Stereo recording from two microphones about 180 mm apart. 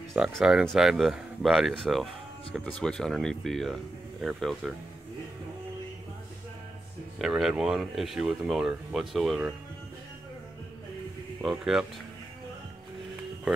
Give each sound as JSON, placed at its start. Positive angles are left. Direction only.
{"t": 0.1, "sound": "speech", "side_deg": 0}
{"t": 7.2, "sound": "speech", "side_deg": 0}
{"t": 11.4, "sound": "speech", "side_deg": 0}